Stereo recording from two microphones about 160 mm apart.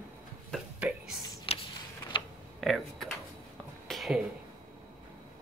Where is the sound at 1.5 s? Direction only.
40° left (ahead or behind).